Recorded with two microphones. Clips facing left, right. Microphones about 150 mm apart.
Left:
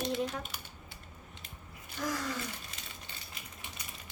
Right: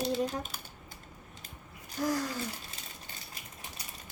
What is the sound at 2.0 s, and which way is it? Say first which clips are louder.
Speech: right 5 dB; 35° right (ahead or behind).